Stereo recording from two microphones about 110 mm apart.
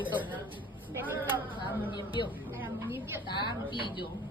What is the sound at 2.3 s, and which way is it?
Speech, 20° right (ahead or behind).